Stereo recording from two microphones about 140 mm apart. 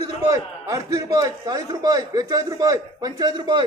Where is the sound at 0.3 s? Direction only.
25° right (ahead or behind).